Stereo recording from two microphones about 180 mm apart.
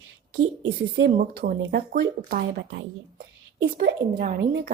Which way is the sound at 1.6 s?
85° right.